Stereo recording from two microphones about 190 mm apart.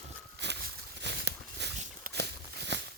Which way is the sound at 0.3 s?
65° right (ahead or behind).